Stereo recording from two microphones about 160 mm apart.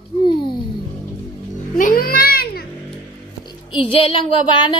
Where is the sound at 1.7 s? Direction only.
60° left (ahead or behind).